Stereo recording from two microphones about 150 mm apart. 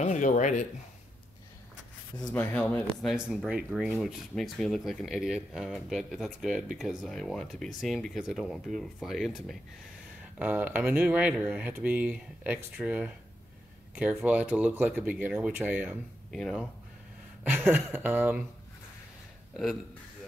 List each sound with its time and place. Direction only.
0.0 s speech: 55° left (ahead or behind)
2.2 s speech: 10° left (ahead or behind)
3.3 s speech: 5° right (ahead or behind)
10.4 s speech: 10° right (ahead or behind)
16.3 s speech: centre (ahead or behind)
17.4 s speech: 10° right (ahead or behind)
19.5 s speech: centre (ahead or behind)